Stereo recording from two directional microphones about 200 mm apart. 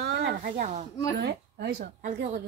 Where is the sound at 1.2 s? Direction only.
55° right (ahead or behind).